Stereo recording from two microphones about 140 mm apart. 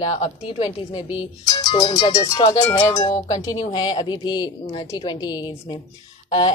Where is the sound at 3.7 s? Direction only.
30° left (ahead or behind).